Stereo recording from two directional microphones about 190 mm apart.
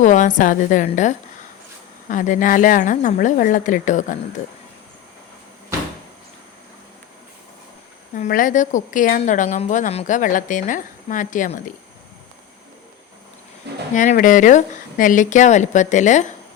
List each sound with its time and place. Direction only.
0.0 s a woman's voice: 40° left (ahead or behind)
8.1 s a woman's voice: 45° left (ahead or behind)
13.9 s speech: 45° left (ahead or behind)